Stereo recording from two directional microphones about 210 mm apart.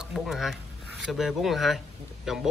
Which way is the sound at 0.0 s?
Centre (ahead or behind).